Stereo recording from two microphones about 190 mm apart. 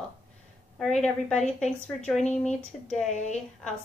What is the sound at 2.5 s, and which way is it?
Speech, 5° left (ahead or behind).